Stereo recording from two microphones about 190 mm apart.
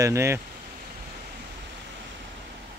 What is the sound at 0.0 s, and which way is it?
Speech, 15° right (ahead or behind).